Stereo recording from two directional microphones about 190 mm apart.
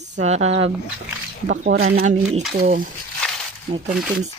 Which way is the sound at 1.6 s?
90° right.